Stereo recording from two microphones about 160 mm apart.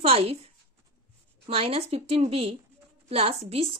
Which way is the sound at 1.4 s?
35° right (ahead or behind).